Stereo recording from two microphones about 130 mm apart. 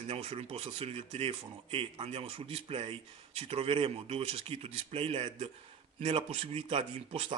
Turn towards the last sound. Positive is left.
turn(degrees=-45)  # may be behind; listen again after turning